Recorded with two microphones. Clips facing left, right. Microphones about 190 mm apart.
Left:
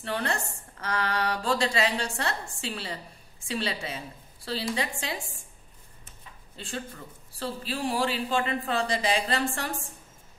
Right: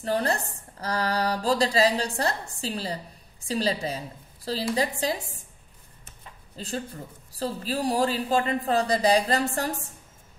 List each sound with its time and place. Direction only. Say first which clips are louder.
0.0 s speech: right 5 dB; 35° right (ahead or behind)
6.5 s speech: right 4 dB; 35° right (ahead or behind)